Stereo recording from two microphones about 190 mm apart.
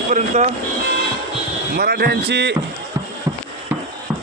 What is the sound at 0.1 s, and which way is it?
Speech, 40° right (ahead or behind).